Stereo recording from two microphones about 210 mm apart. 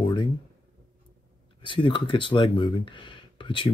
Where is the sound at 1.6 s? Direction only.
25° left (ahead or behind).